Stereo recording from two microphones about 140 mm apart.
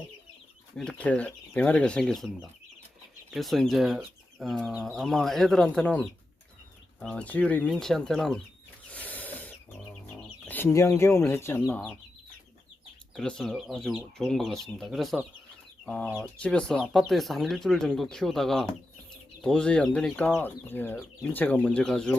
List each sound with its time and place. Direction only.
0.8 s speech: 10° left (ahead or behind)
8.9 s snake: 10° left (ahead or behind)
10.2 s speech: 15° left (ahead or behind)
13.1 s speech: 5° left (ahead or behind)
16.2 s speech: 5° left (ahead or behind)